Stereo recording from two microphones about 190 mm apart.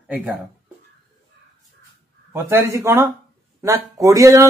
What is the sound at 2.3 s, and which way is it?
Speech, 15° right (ahead or behind).